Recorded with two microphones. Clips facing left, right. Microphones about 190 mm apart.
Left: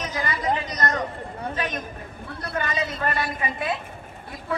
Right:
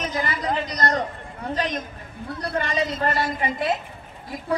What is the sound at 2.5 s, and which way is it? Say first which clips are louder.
A woman's voice: right 2 dB; 30° right (ahead or behind).